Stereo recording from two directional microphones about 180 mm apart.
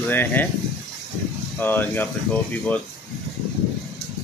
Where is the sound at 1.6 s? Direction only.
10° left (ahead or behind).